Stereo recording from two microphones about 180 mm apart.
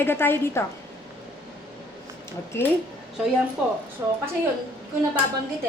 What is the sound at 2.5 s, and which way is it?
Speech, 15° left (ahead or behind).